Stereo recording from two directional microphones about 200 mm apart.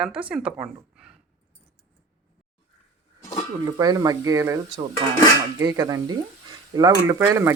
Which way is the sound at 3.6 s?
20° right (ahead or behind).